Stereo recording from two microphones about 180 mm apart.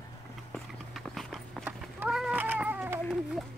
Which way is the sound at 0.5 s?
Centre (ahead or behind).